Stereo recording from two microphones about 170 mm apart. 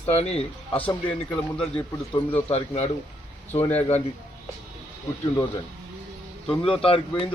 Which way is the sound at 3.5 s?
40° left (ahead or behind).